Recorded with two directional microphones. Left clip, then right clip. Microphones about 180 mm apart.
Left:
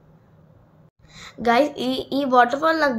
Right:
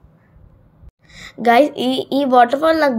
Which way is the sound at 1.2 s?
30° right (ahead or behind).